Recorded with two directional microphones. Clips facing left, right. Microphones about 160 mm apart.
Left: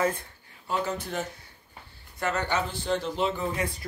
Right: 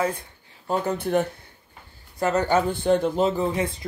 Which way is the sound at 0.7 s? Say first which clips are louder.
Right 6 dB; 55° right (ahead or behind).